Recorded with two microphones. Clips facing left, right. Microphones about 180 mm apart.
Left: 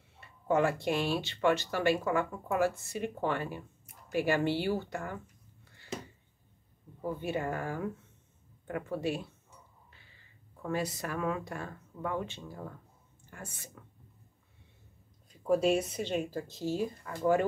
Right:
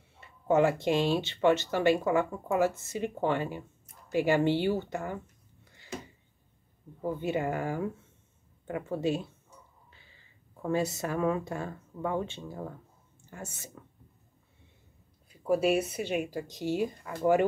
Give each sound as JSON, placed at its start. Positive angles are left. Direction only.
{"t": 0.2, "sound": "speech", "side_deg": -20}
{"t": 7.1, "sound": "speech", "side_deg": -20}
{"t": 10.6, "sound": "speech", "side_deg": -25}
{"t": 15.2, "sound": "speech", "side_deg": -5}